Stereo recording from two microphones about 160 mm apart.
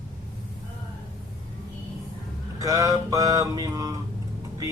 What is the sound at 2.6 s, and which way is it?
A man's voice, 20° right (ahead or behind).